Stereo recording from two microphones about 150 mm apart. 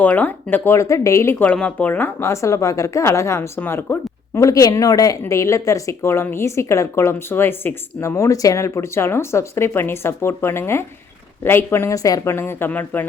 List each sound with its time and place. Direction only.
0.0 s a woman's voice: 10° left (ahead or behind)